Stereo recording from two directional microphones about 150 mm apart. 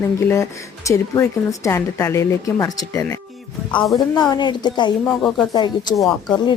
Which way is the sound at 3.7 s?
Centre (ahead or behind).